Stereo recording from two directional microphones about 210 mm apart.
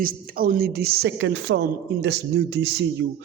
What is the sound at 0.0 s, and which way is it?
Speech, 40° right (ahead or behind).